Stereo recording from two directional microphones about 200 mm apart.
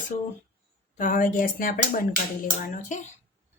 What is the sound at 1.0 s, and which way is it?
A woman's voice, 40° left (ahead or behind).